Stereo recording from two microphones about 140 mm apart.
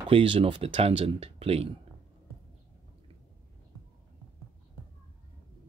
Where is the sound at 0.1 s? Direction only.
40° right (ahead or behind).